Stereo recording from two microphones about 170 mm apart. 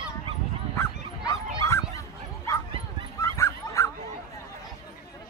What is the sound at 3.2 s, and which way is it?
Dog, 15° left (ahead or behind).